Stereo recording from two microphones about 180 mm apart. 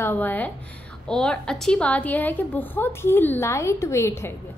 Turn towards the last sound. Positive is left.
turn(degrees=15)  # may be behind; listen again after turning